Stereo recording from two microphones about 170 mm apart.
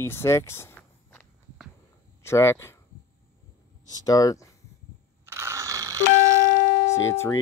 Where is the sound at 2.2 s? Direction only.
15° left (ahead or behind).